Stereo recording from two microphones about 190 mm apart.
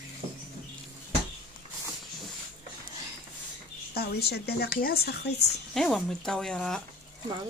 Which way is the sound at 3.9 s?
60° left (ahead or behind).